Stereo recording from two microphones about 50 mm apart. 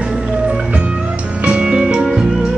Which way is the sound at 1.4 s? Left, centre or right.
Right.